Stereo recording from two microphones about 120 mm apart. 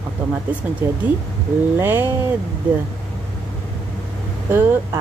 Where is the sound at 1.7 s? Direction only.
20° right (ahead or behind).